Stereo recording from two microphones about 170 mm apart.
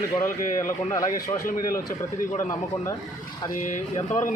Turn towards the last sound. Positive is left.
turn(degrees=45)  # may be behind; listen again after turning